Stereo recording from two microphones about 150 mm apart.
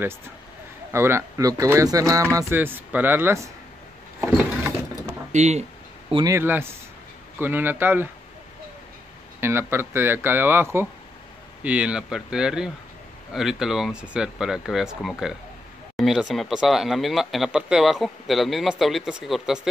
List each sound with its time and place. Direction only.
0.9 s speech: 15° right (ahead or behind)
5.3 s a sound: 50° right (ahead or behind)
6.2 s speech: 15° right (ahead or behind)
9.4 s speech: 15° right (ahead or behind)